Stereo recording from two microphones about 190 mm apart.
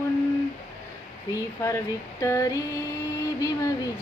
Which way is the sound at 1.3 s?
15° left (ahead or behind).